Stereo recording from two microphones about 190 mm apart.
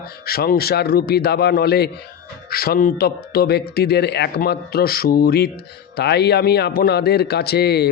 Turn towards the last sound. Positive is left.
turn(degrees=60)  # may be behind; listen again after turning